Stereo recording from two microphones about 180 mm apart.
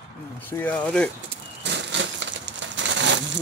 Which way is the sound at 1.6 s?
75° right (ahead or behind).